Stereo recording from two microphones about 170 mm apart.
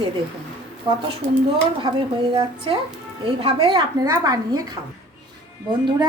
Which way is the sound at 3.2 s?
30° right (ahead or behind).